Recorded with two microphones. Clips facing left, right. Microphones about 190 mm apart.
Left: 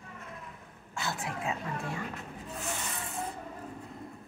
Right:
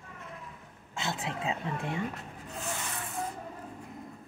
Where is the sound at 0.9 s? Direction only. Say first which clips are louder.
Right 1 dB; 20° right (ahead or behind).